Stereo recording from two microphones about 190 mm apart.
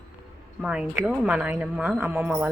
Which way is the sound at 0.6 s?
5° right (ahead or behind).